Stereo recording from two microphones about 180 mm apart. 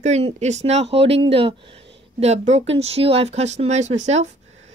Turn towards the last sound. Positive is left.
turn(degrees=-40)  # may be behind; listen again after turning